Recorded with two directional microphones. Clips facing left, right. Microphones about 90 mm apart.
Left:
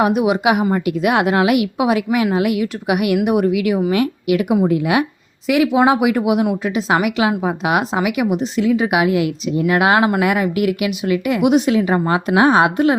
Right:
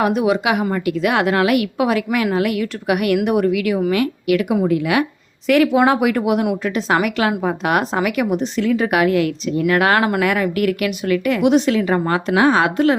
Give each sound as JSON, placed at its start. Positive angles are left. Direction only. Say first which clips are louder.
{"t": 0.0, "sound": "a woman's voice", "louder": "left 2 dB", "side_deg": 15}
{"t": 5.5, "sound": "a woman's voice", "louder": "even", "side_deg": 10}